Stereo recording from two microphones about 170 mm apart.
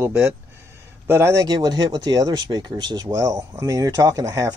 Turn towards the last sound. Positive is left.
turn(degrees=-20)  # may be behind; listen again after turning